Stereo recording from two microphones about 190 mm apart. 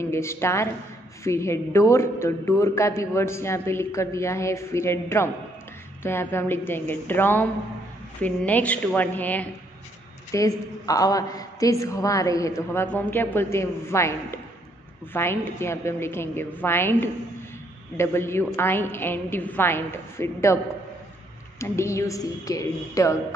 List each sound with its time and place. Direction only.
0.0 s a man's voice: 15° left (ahead or behind)
21.5 s a man's voice: 15° left (ahead or behind)